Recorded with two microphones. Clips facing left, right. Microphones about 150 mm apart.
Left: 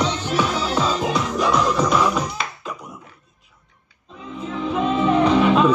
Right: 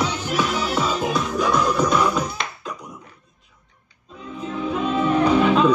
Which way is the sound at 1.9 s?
5° left (ahead or behind).